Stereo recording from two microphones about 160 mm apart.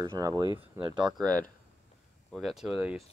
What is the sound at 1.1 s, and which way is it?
Speech, 5° left (ahead or behind).